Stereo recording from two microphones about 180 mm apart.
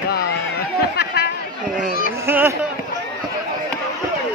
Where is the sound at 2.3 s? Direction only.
10° right (ahead or behind).